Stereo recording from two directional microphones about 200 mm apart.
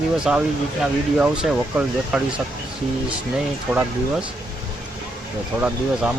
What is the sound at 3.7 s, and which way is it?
Speech, 10° right (ahead or behind).